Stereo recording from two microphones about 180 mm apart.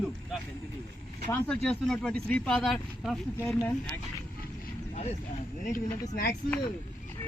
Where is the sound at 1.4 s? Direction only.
5° left (ahead or behind).